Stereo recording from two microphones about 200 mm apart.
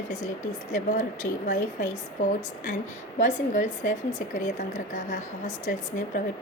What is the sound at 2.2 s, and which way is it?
Speech, 90° left.